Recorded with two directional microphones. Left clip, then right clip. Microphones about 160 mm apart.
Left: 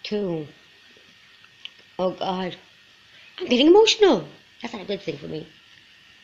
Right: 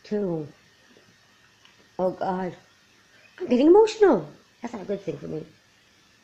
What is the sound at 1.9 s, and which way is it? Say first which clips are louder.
Speech: left 1 dB; 5° right (ahead or behind).